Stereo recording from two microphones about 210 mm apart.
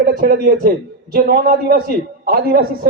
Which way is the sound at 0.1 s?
40° right (ahead or behind).